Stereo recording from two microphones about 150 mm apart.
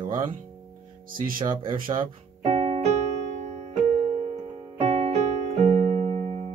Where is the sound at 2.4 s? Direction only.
45° right (ahead or behind).